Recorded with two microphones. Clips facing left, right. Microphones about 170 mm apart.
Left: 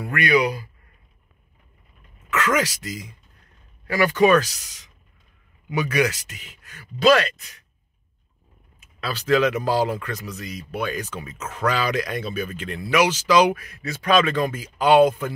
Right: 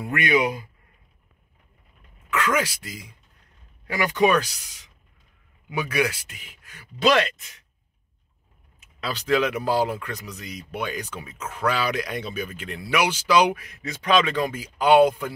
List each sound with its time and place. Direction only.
0.0 s speech: 20° right (ahead or behind)
2.3 s speech: 10° right (ahead or behind)
3.8 s speech: 15° right (ahead or behind)
8.7 s speech: 15° right (ahead or behind)